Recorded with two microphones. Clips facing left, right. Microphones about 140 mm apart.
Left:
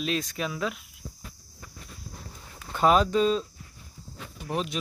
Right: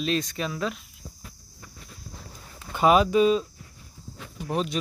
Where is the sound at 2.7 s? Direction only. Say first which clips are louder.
Right 2 dB; 5° right (ahead or behind).